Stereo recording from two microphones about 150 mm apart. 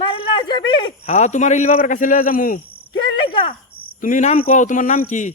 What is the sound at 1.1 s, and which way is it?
Speech, 50° left (ahead or behind).